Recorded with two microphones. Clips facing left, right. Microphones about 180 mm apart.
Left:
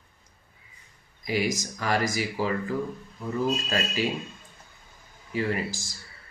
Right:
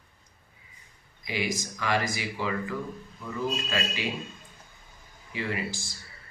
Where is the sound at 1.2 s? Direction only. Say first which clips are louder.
Left 4 dB; 40° left (ahead or behind).